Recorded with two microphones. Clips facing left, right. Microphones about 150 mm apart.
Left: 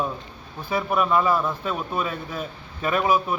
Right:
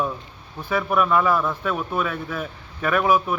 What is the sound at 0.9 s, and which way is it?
Speech, 25° left (ahead or behind).